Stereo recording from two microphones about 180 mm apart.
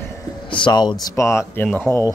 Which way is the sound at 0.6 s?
25° left (ahead or behind).